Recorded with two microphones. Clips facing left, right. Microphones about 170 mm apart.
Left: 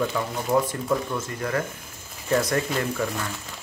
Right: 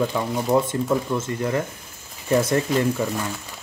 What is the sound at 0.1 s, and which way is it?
Speech, 25° right (ahead or behind).